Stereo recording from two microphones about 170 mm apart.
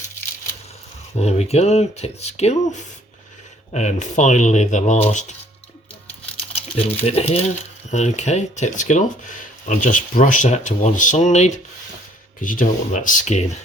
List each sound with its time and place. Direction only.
1.1 s speech: 40° left (ahead or behind)
6.6 s speech: 35° left (ahead or behind)